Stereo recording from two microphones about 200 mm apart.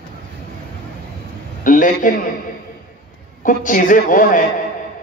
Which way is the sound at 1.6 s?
40° left (ahead or behind).